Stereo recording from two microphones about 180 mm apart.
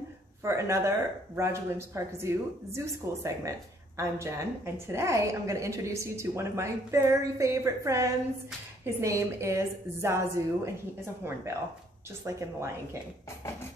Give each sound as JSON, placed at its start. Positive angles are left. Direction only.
{"t": 0.4, "sound": "speech", "side_deg": -15}